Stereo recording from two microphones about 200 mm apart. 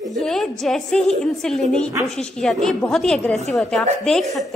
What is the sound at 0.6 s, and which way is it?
A woman's voice, centre (ahead or behind).